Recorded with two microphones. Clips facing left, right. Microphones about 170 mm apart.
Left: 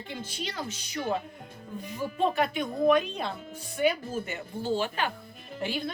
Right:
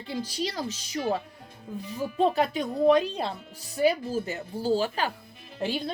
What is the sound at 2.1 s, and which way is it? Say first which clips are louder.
A woman's voice: right 3 dB; 35° right (ahead or behind).